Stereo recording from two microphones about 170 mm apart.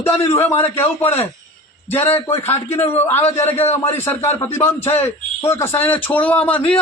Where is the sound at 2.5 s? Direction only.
10° left (ahead or behind).